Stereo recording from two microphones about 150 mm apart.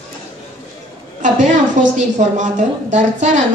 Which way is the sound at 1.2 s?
55° right (ahead or behind).